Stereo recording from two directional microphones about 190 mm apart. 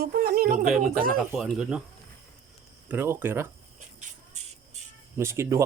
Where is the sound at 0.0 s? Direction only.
55° right (ahead or behind).